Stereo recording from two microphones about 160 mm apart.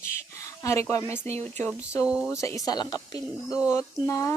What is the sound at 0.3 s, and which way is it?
Speech, 20° left (ahead or behind).